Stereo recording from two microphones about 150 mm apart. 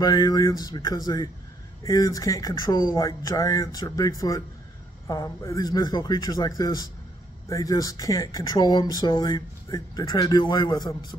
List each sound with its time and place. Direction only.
0.0 s speech: 25° left (ahead or behind)